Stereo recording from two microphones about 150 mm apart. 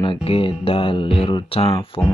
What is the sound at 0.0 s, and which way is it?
Speech, 35° left (ahead or behind).